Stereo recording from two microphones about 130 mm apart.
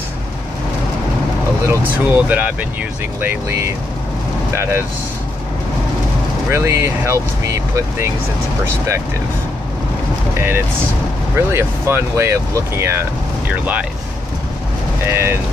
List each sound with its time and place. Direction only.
1.7 s speech: 15° right (ahead or behind)
6.5 s speech: 20° right (ahead or behind)
10.3 s speech: 15° right (ahead or behind)
15.0 s speech: 20° right (ahead or behind)